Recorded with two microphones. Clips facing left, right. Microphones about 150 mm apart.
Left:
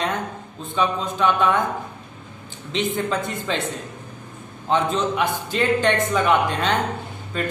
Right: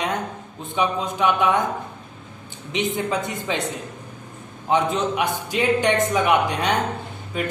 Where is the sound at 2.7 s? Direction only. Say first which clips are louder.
Even; 15° right (ahead or behind).